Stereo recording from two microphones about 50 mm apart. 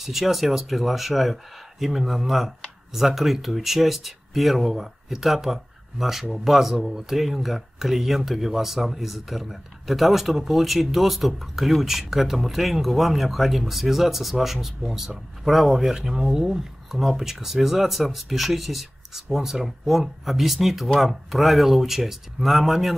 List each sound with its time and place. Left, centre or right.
0.0 s speech: centre